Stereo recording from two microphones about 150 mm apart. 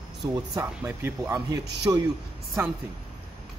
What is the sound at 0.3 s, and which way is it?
Speech, 15° right (ahead or behind).